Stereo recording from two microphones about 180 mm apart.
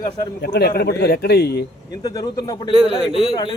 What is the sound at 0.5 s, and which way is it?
A man's voice, 65° left (ahead or behind).